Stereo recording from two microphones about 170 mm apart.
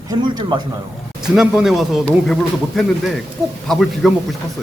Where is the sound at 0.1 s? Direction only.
25° right (ahead or behind).